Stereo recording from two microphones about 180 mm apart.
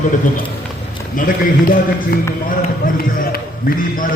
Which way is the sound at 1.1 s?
50° left (ahead or behind).